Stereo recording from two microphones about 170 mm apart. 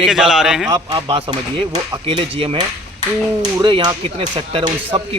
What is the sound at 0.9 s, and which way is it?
A man's voice, 30° right (ahead or behind).